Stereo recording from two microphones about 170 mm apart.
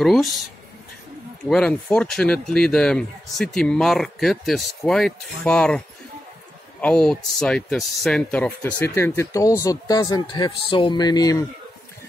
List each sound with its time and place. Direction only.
0.0 s speech: centre (ahead or behind)
1.5 s speech: 5° left (ahead or behind); by 11.4 s 20° left (ahead or behind)